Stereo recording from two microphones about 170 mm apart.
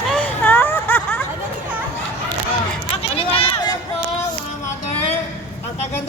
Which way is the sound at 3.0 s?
35° left (ahead or behind).